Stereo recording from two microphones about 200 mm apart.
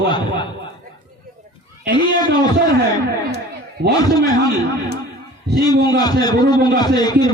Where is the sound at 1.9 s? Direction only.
20° left (ahead or behind).